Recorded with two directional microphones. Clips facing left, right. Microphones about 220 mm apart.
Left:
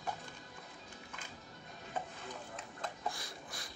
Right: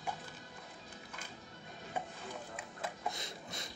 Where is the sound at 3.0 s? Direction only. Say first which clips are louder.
Right 1 dB; 20° right (ahead or behind).